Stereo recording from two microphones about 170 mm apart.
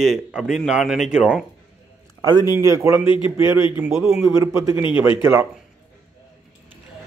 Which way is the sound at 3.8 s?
5° right (ahead or behind).